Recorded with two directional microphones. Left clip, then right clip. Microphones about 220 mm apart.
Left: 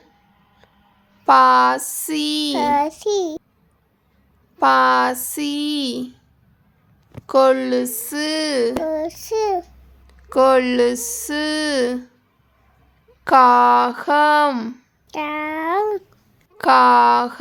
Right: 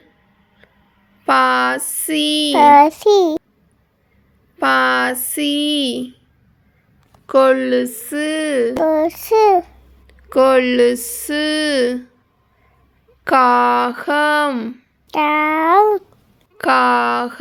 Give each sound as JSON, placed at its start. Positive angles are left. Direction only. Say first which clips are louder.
{"t": 1.2, "sound": "speech", "louder": "left 2 dB", "side_deg": 0}
{"t": 2.6, "sound": "child singing", "louder": "right 12 dB", "side_deg": -20}
{"t": 4.5, "sound": "speech", "louder": "left 1 dB", "side_deg": 0}
{"t": 7.3, "sound": "speech", "louder": "right 2 dB", "side_deg": -5}
{"t": 8.8, "sound": "child singing", "louder": "right 8 dB", "side_deg": -20}
{"t": 10.1, "sound": "speech", "louder": "right 2 dB", "side_deg": -5}
{"t": 13.2, "sound": "speech", "louder": "left 1 dB", "side_deg": -5}
{"t": 15.1, "sound": "a sound", "louder": "right 9 dB", "side_deg": -20}
{"t": 16.6, "sound": "speech", "louder": "left 2 dB", "side_deg": -5}